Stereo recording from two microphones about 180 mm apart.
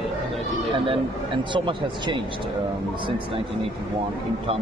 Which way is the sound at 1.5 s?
25° right (ahead or behind).